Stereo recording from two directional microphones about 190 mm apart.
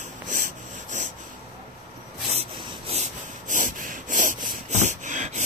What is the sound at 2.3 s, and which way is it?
Rub, 30° right (ahead or behind).